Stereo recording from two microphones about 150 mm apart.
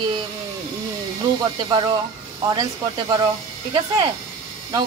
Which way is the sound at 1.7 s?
35° right (ahead or behind).